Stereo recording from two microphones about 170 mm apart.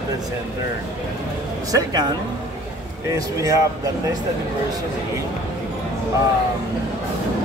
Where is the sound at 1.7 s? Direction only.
20° right (ahead or behind).